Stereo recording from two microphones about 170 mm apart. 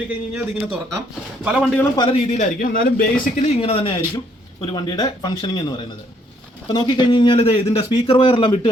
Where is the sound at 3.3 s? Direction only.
35° left (ahead or behind).